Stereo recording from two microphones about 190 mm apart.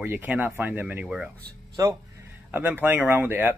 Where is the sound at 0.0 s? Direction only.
10° right (ahead or behind).